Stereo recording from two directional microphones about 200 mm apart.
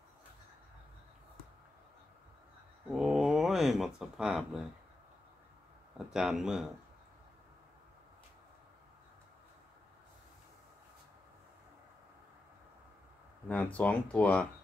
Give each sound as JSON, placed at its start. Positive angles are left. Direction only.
{"t": 2.9, "sound": "speech", "side_deg": -5}
{"t": 6.1, "sound": "speech", "side_deg": 0}
{"t": 13.5, "sound": "speech", "side_deg": 5}